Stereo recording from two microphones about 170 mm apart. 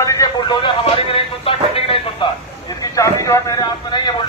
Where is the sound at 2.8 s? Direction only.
20° left (ahead or behind).